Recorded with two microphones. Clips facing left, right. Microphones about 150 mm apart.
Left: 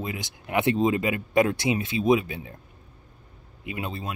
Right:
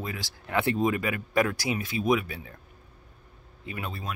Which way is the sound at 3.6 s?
20° left (ahead or behind).